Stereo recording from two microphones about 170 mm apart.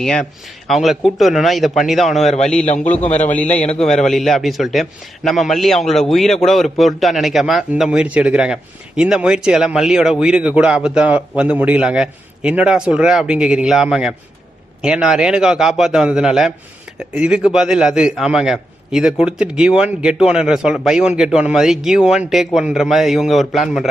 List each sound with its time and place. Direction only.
0.0 s a man's voice: 5° left (ahead or behind)
3.1 s a man's voice: 45° left (ahead or behind)
3.9 s a man's voice: centre (ahead or behind)